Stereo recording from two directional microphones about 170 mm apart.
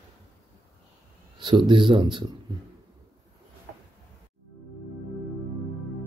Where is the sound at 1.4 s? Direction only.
30° right (ahead or behind).